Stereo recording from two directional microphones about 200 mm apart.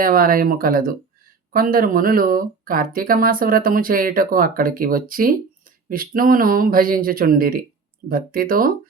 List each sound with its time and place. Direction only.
0.0 s speech: 45° right (ahead or behind)